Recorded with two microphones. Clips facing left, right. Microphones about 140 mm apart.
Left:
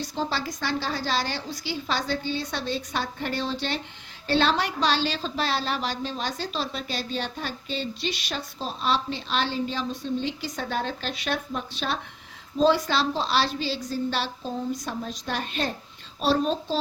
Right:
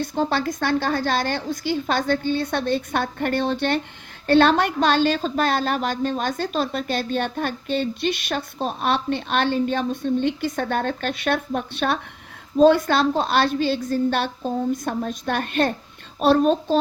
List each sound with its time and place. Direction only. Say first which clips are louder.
0.0 s a woman's voice: right 7 dB; 55° right (ahead or behind)